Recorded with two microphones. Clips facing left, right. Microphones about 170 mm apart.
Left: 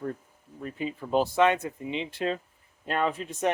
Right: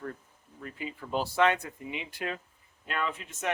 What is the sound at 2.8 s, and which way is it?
Speech, 40° left (ahead or behind).